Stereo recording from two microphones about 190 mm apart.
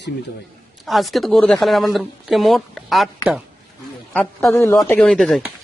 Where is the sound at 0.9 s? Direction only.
Centre (ahead or behind).